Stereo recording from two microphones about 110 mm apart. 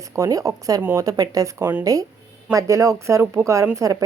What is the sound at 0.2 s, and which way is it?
A woman's voice, 30° right (ahead or behind).